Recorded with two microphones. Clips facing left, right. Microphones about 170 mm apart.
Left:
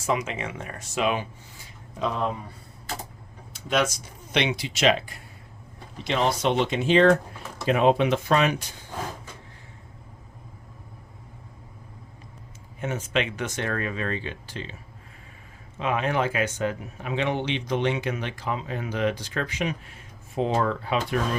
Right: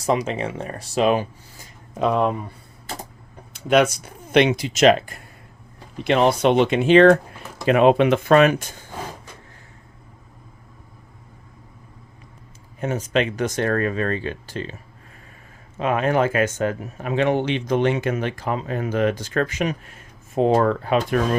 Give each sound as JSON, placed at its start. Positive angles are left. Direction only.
{"t": 0.0, "sound": "speech", "side_deg": -35}
{"t": 2.0, "sound": "speech", "side_deg": -60}
{"t": 3.5, "sound": "speech", "side_deg": -60}
{"t": 12.8, "sound": "speech", "side_deg": -40}
{"t": 15.8, "sound": "speech", "side_deg": -45}